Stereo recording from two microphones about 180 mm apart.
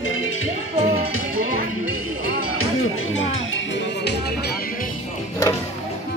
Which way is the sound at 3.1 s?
90° left.